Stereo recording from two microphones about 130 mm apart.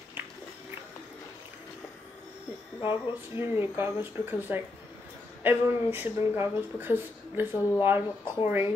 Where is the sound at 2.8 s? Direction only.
40° left (ahead or behind).